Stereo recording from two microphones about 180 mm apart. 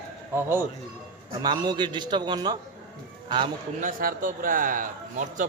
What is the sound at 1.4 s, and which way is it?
A man's voice, 25° right (ahead or behind).